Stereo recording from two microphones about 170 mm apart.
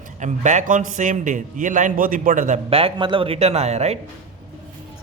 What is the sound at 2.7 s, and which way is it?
Speech, 30° right (ahead or behind).